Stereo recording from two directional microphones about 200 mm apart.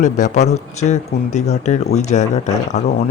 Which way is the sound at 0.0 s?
35° left (ahead or behind).